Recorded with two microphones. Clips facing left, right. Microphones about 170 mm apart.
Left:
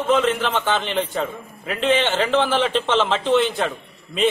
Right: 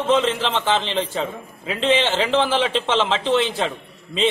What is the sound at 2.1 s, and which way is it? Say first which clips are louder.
A man's voice: even; centre (ahead or behind).